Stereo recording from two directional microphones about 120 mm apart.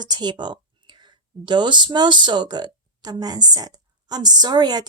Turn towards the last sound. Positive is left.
turn(degrees=-35)  # may be behind; listen again after turning